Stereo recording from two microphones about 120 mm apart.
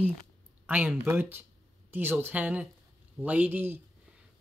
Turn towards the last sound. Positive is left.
turn(degrees=-15)  # may be behind; listen again after turning